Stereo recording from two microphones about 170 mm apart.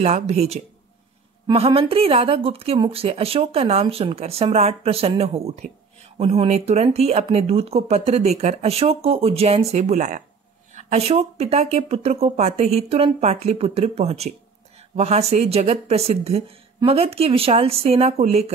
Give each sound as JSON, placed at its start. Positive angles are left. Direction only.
{"t": 0.0, "sound": "speech", "side_deg": -40}